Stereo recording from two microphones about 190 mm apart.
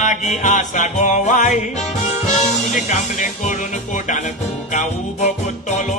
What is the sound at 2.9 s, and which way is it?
Music, 40° left (ahead or behind).